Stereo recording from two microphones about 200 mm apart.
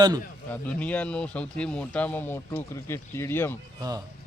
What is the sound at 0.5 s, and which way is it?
Speech, 5° left (ahead or behind).